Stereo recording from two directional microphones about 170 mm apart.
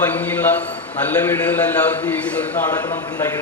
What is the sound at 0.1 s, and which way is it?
A man's voice, 10° left (ahead or behind).